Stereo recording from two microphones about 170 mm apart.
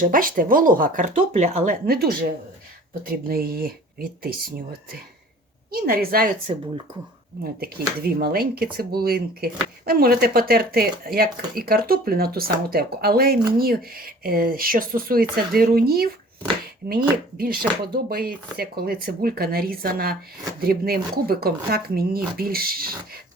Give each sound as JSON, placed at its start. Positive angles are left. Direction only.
{"t": 0.0, "sound": "speech", "side_deg": -55}
{"t": 1.9, "sound": "speech", "side_deg": -65}
{"t": 7.6, "sound": "speech", "side_deg": -65}